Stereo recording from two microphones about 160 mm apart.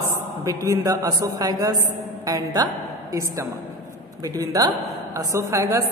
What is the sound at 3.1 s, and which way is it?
A woman's voice, 20° right (ahead or behind).